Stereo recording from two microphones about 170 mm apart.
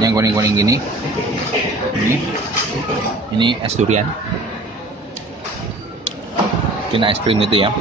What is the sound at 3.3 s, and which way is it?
Speech, 30° right (ahead or behind).